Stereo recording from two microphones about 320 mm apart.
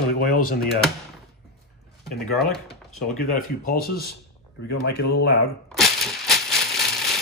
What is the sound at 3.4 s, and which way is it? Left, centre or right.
Speech, left.